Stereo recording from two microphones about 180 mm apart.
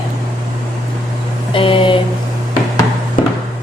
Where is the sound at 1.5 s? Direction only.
30° left (ahead or behind).